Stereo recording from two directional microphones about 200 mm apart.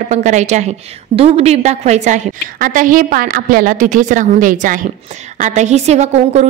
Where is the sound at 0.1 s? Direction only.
35° right (ahead or behind).